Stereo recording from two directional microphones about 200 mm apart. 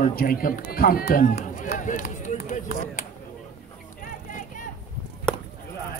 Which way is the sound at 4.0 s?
40° left (ahead or behind).